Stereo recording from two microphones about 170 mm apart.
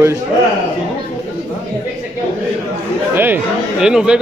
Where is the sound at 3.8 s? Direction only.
5° right (ahead or behind).